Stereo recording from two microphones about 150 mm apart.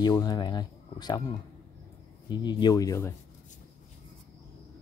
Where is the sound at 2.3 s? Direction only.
30° left (ahead or behind).